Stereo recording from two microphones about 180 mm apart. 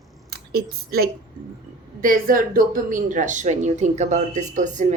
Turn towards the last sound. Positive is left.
turn(degrees=-45)  # may be behind; listen again after turning